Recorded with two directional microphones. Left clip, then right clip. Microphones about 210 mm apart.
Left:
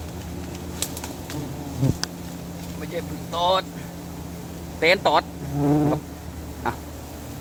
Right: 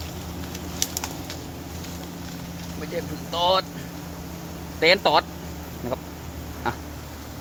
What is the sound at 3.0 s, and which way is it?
Speech, 15° right (ahead or behind).